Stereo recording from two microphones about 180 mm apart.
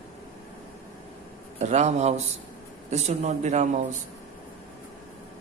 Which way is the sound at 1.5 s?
40° right (ahead or behind).